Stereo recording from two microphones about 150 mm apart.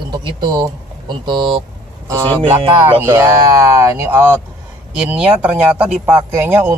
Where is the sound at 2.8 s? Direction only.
15° right (ahead or behind).